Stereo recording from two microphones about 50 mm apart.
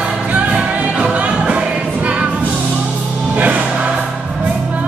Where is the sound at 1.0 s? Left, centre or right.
Right.